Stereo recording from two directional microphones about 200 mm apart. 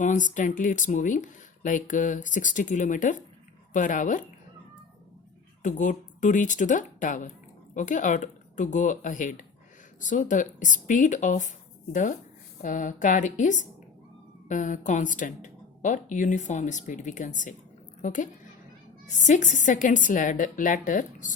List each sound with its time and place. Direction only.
0.0 s speech: 40° left (ahead or behind)
5.6 s speech: 40° left (ahead or behind)